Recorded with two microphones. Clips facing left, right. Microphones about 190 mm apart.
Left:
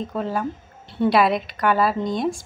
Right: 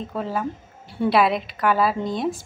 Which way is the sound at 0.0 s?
Centre (ahead or behind).